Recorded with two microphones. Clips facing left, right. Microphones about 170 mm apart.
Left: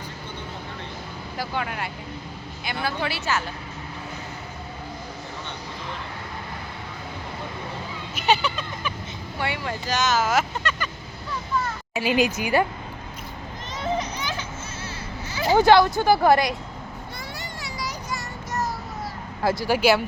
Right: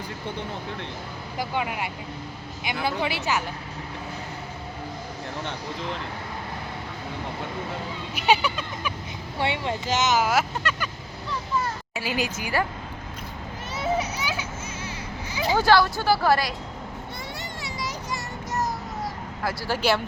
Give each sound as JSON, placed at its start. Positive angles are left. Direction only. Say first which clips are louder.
{"t": 1.4, "sound": "speech", "louder": "right 1 dB", "side_deg": -15}
{"t": 8.3, "sound": "speech", "louder": "even", "side_deg": -10}
{"t": 9.4, "sound": "speech", "louder": "right 2 dB", "side_deg": -25}
{"t": 11.9, "sound": "speech", "louder": "left 7 dB", "side_deg": 20}
{"t": 13.7, "sound": "children playing", "louder": "right 1 dB", "side_deg": -10}
{"t": 15.5, "sound": "speech", "louder": "left 4 dB", "side_deg": 20}
{"t": 17.6, "sound": "a sound", "louder": "even", "side_deg": -25}
{"t": 19.4, "sound": "speech", "louder": "left 7 dB", "side_deg": 25}
{"t": 19.6, "sound": "speech", "louder": "left 4 dB", "side_deg": 10}